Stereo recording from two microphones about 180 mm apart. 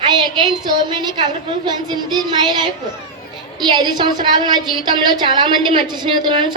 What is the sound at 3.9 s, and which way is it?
A woman's voice, 25° right (ahead or behind).